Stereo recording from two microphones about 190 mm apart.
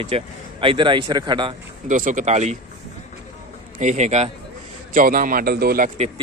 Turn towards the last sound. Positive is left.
turn(degrees=-35)  # may be behind; listen again after turning